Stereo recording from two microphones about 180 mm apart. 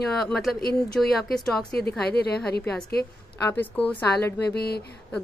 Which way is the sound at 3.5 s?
10° left (ahead or behind).